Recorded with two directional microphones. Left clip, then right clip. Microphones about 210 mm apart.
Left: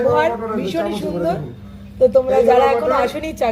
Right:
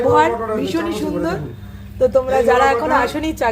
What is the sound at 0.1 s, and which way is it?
A woman's voice, 20° right (ahead or behind).